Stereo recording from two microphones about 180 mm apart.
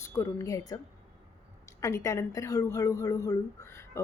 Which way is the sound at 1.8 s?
15° left (ahead or behind).